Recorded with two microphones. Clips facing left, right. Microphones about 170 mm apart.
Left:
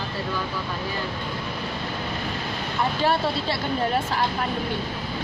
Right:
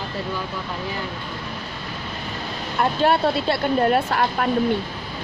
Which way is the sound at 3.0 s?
60° right (ahead or behind).